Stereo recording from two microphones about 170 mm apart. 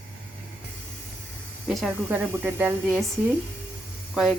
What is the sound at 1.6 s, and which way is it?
A woman's voice, 5° right (ahead or behind).